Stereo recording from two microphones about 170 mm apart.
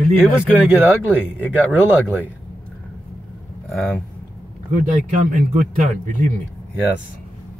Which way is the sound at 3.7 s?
Centre (ahead or behind).